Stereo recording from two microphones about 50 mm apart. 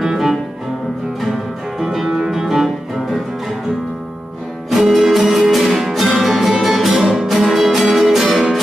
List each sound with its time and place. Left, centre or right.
0.0 s music: centre
1.8 s music: centre
4.6 s music: centre